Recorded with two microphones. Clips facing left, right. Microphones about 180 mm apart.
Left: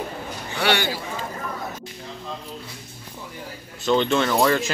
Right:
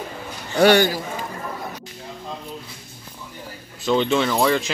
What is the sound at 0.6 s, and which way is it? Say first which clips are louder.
Speech: right 8 dB; 45° right (ahead or behind).